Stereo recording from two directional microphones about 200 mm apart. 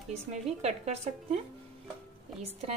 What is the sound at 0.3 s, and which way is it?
Speech, 35° right (ahead or behind).